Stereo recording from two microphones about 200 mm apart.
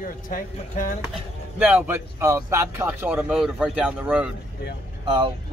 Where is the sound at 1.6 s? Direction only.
10° right (ahead or behind).